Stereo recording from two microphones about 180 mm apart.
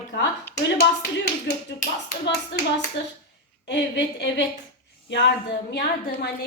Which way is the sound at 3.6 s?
75° left (ahead or behind).